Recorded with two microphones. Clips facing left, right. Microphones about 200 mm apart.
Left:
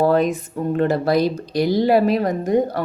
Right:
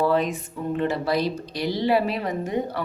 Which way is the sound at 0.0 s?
45° left (ahead or behind).